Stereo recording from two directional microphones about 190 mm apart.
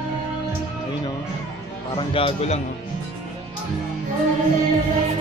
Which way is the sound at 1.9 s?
30° left (ahead or behind).